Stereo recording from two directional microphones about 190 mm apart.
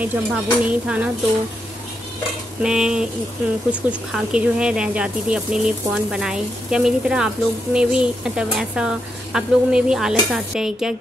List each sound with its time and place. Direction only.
0.0 s speech: 10° right (ahead or behind)
2.6 s speech: 5° right (ahead or behind)
4.1 s speech: 5° right (ahead or behind)